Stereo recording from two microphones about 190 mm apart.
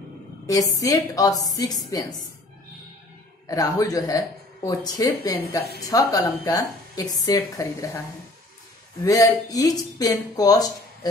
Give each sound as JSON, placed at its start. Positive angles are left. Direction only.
{"t": 0.5, "sound": "a woman's voice", "side_deg": 20}
{"t": 3.4, "sound": "a woman's voice", "side_deg": 20}
{"t": 9.0, "sound": "speech", "side_deg": 20}